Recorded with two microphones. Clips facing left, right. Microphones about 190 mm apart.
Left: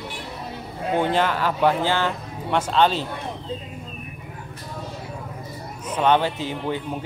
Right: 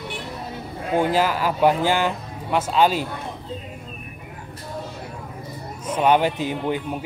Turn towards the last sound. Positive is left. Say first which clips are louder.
# right 3 dB
turn(degrees=-15)  # may be behind; listen again after turning